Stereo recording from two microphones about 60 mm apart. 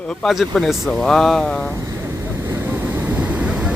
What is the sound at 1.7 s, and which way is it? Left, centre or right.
Speech, right.